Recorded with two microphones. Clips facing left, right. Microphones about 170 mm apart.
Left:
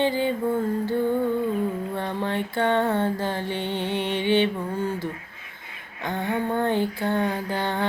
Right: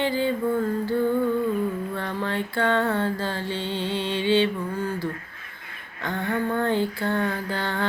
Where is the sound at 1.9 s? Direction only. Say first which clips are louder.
Left 1 dB; 20° left (ahead or behind).